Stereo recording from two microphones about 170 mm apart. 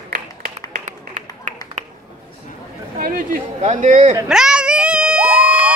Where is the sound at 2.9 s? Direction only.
55° right (ahead or behind).